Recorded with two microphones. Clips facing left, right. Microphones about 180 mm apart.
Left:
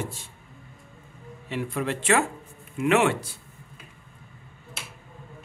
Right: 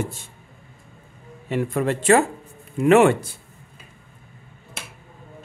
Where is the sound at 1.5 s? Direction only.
50° right (ahead or behind).